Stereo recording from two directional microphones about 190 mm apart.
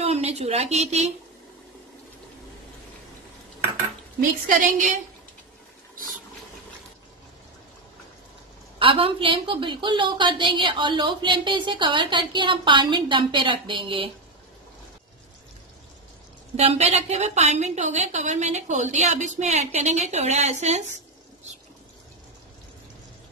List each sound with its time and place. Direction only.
0.0 s a woman's voice: 35° right (ahead or behind)
4.5 s a woman's voice: 40° right (ahead or behind)
8.7 s a woman's voice: 30° right (ahead or behind)
16.5 s a woman's voice: 35° right (ahead or behind)